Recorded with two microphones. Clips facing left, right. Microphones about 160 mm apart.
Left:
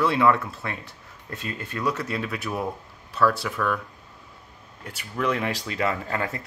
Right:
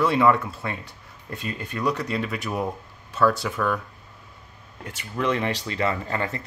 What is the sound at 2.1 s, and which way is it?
Speech, centre (ahead or behind).